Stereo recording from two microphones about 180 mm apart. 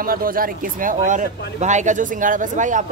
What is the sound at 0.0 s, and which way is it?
Speech, 50° right (ahead or behind).